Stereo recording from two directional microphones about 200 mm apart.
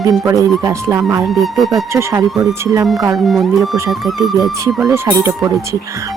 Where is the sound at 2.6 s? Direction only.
15° right (ahead or behind).